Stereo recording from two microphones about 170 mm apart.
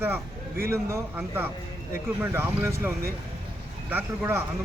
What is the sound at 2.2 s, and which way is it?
Speech, 15° right (ahead or behind).